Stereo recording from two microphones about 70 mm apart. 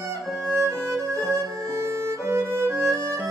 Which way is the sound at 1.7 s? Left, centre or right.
Right.